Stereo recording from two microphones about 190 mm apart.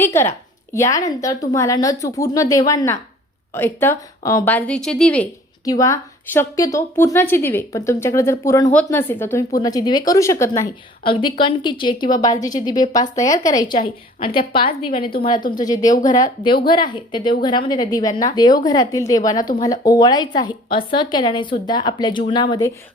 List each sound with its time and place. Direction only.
0.0 s a woman's voice: 15° left (ahead or behind)
5.6 s a woman's voice: 15° left (ahead or behind)
11.0 s a woman's voice: 25° left (ahead or behind)
15.9 s speech: 45° left (ahead or behind)
16.1 s a woman's voice: 25° left (ahead or behind)